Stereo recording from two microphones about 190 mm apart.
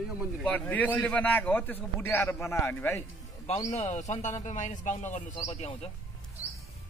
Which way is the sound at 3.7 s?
35° left (ahead or behind).